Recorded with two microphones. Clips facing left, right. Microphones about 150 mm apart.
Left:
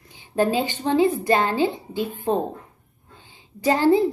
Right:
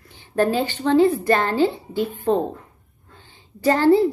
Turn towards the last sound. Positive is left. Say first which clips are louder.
# right 2 dB
turn(degrees=15)  # may be behind; listen again after turning